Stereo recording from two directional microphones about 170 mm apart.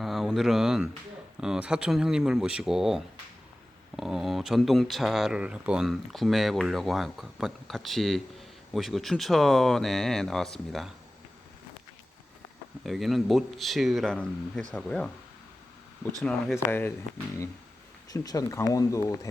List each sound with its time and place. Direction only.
0.0 s a sound: centre (ahead or behind)
1.4 s speech: 5° right (ahead or behind)
12.8 s speech: centre (ahead or behind)
18.1 s speech: 20° left (ahead or behind)